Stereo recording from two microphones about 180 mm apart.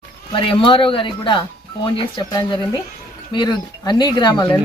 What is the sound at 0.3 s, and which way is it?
Speech, 30° left (ahead or behind).